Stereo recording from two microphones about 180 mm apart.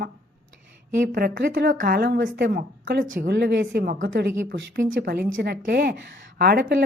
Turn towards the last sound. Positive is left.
turn(degrees=-60)  # may be behind; listen again after turning